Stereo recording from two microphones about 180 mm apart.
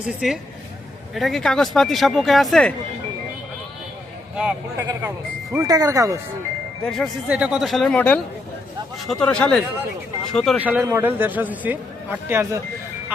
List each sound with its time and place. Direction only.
0.0 s speech: 5° right (ahead or behind)
4.4 s speech: 5° right (ahead or behind)
6.8 s speech: centre (ahead or behind)